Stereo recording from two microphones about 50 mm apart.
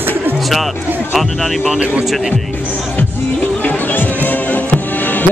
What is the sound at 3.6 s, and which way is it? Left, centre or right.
Music, left.